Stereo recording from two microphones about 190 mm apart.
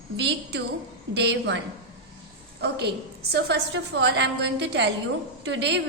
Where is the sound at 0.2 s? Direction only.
65° right (ahead or behind).